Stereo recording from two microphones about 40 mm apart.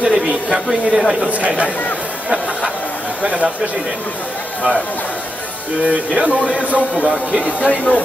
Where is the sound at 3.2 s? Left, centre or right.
Right.